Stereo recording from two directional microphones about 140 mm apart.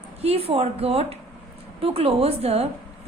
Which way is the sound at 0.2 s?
45° right (ahead or behind).